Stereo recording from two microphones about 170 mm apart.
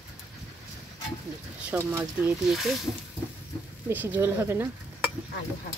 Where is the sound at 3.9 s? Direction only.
10° right (ahead or behind).